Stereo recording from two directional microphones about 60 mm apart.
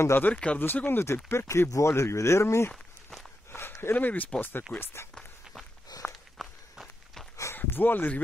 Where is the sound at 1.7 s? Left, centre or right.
Left.